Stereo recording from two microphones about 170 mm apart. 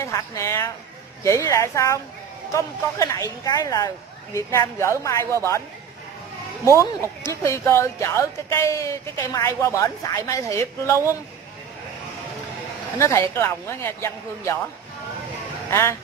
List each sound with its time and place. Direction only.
0.0 s speech: 15° left (ahead or behind)
6.8 s speech: 20° left (ahead or behind)
13.3 s speech: 15° left (ahead or behind)
15.7 s speech: 15° left (ahead or behind)